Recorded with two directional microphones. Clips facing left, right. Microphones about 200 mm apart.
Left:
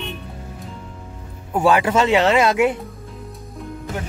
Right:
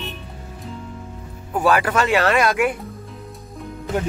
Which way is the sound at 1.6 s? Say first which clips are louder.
Left 2 dB; 25° left (ahead or behind).